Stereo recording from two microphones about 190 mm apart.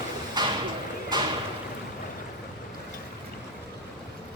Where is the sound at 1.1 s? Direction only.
20° right (ahead or behind).